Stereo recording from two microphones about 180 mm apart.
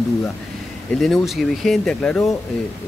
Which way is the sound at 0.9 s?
Centre (ahead or behind).